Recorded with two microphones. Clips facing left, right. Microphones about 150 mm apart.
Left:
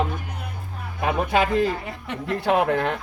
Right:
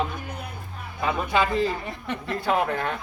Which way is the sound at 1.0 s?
60° left (ahead or behind).